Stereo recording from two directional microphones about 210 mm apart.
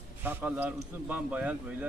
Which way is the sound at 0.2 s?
10° right (ahead or behind).